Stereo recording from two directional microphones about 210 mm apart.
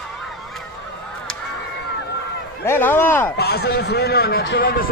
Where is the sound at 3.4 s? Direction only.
50° left (ahead or behind).